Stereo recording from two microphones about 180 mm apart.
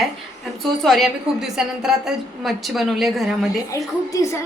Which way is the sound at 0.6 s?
Centre (ahead or behind).